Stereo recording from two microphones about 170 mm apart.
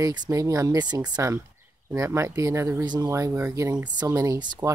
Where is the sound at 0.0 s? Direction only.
25° right (ahead or behind).